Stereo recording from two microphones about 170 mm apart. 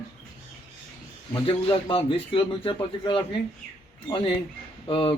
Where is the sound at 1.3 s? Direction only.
30° left (ahead or behind).